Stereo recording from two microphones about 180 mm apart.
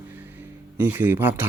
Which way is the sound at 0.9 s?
10° right (ahead or behind).